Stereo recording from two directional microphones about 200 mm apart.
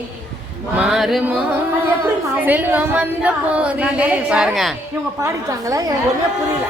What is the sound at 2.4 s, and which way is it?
Speech, 10° right (ahead or behind).